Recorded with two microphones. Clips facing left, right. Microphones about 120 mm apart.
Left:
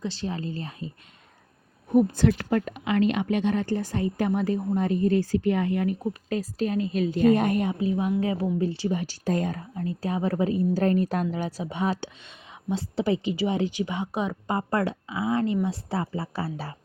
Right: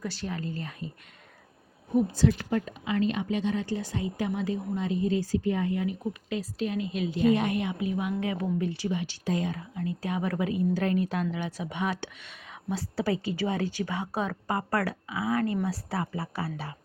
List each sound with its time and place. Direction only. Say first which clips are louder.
0.0 s a woman's voice: left 3 dB; 25° left (ahead or behind)
1.9 s a woman's voice: left 4 dB; 60° left (ahead or behind); by 8.9 s 30° left (ahead or behind)
8.9 s a woman's voice: left 3 dB; 40° left (ahead or behind)